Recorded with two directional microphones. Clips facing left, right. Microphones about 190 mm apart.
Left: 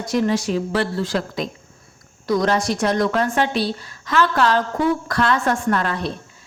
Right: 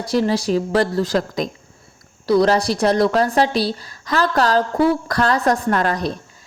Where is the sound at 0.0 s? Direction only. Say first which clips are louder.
Right 1 dB; 35° right (ahead or behind).